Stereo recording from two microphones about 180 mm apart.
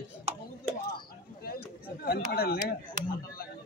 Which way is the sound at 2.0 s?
60° left (ahead or behind).